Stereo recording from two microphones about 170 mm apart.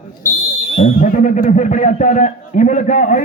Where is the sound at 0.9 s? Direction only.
50° left (ahead or behind).